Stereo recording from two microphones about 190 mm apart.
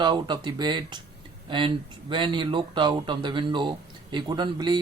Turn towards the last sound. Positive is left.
turn(degrees=-25)  # may be behind; listen again after turning